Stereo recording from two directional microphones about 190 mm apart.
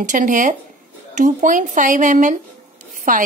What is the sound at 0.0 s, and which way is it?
A woman's voice, 45° right (ahead or behind).